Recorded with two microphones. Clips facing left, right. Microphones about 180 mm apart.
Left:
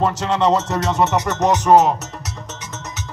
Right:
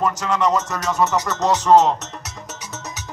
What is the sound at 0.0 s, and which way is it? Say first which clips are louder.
Music: left 2 dB; 25° left (ahead or behind).